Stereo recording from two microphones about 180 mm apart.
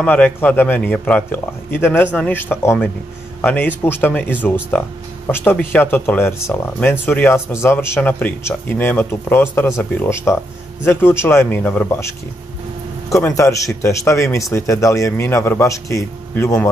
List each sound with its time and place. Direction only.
0.0 s speech: 10° left (ahead or behind)
13.1 s speech: 15° left (ahead or behind)